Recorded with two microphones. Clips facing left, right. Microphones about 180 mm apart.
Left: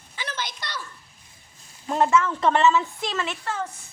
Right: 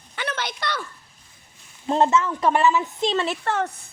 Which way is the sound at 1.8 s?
25° right (ahead or behind).